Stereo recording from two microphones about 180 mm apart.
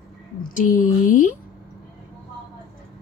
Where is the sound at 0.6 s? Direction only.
45° left (ahead or behind).